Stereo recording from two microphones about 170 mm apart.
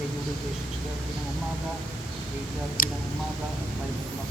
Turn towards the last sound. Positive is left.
turn(degrees=55)  # may be behind; listen again after turning